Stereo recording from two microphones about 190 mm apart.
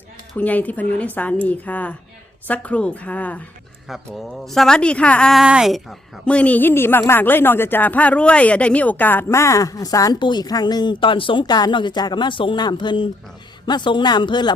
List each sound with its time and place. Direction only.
0.3 s speech: 10° left (ahead or behind); by 14.5 s 25° left (ahead or behind)